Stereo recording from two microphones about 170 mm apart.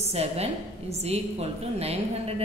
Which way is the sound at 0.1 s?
40° right (ahead or behind).